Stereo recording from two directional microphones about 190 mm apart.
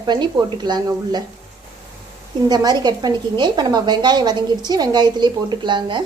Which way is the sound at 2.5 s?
20° right (ahead or behind).